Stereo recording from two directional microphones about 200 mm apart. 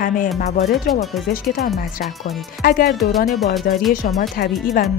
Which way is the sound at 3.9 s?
45° left (ahead or behind).